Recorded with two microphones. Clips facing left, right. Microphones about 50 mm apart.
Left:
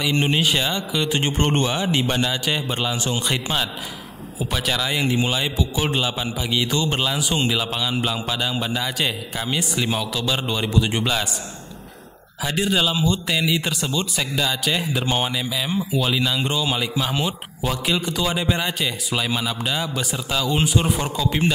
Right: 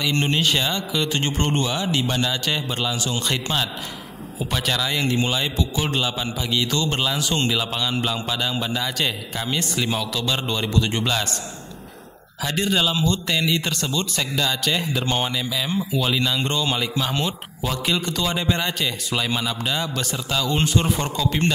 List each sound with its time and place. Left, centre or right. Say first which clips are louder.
0.0 s a man's voice: left 1 dB; centre
1.5 s a man's voice: left 2 dB; left
3.3 s a man's voice: left 1 dB; centre
12.4 s a man's voice: left 1 dB; centre